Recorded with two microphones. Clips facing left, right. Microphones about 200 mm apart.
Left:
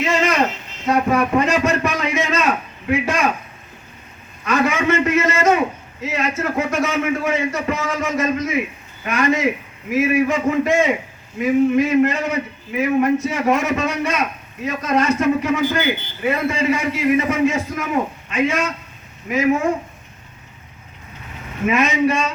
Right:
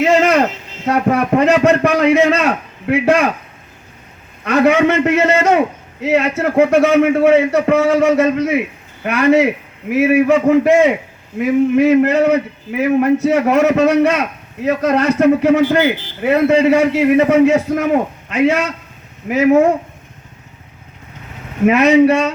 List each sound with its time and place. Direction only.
0.0 s a sound: 65° right (ahead or behind)
0.9 s a man's voice: 60° right (ahead or behind)
4.4 s a man's voice: 65° right (ahead or behind)
21.7 s a man's voice: 65° right (ahead or behind)